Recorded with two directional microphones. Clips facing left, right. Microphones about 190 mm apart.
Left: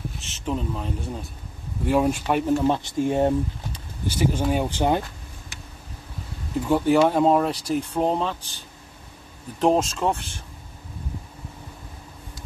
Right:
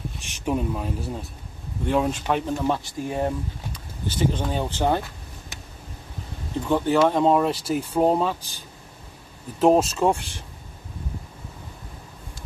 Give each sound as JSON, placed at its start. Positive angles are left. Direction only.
{"t": 0.2, "sound": "speech", "side_deg": -15}
{"t": 1.9, "sound": "speech", "side_deg": 10}
{"t": 4.1, "sound": "speech", "side_deg": 10}
{"t": 6.7, "sound": "speech", "side_deg": 10}